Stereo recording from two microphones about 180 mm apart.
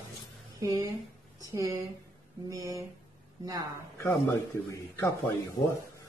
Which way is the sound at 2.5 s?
20° right (ahead or behind).